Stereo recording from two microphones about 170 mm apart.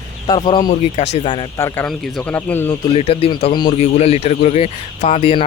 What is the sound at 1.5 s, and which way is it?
Speech, 15° left (ahead or behind).